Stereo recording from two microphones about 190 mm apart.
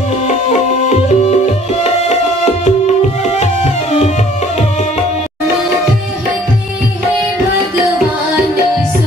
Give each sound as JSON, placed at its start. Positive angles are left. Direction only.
{"t": 0.5, "sound": "music", "side_deg": 35}